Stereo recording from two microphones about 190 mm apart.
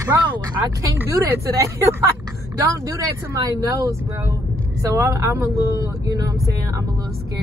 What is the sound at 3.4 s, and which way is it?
Speech, 20° right (ahead or behind).